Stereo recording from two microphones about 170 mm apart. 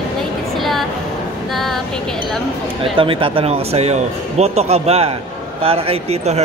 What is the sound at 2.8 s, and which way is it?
A man's voice, 30° right (ahead or behind).